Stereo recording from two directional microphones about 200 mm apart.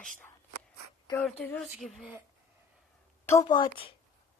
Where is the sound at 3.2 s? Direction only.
20° left (ahead or behind).